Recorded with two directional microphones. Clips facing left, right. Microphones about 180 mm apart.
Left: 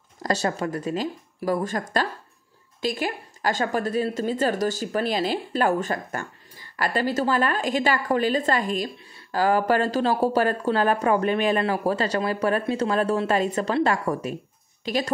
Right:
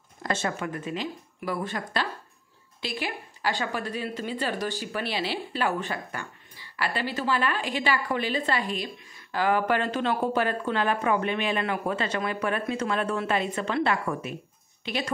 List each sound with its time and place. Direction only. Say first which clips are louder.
0.2 s speech: left 4 dB; 40° left (ahead or behind)